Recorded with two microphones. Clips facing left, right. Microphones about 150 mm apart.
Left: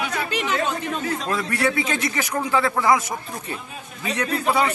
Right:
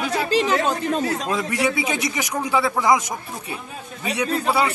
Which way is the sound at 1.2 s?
15° right (ahead or behind).